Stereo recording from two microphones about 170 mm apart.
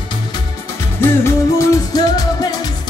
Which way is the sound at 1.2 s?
20° left (ahead or behind).